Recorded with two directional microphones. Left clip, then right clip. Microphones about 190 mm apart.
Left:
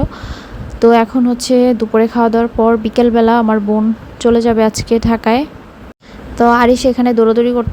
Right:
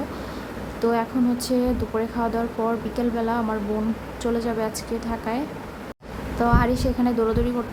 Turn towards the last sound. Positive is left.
turn(degrees=35)  # may be behind; listen again after turning